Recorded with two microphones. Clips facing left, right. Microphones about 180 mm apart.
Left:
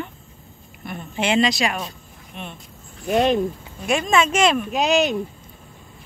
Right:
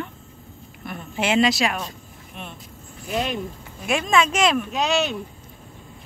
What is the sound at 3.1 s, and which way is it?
Speech, 50° left (ahead or behind).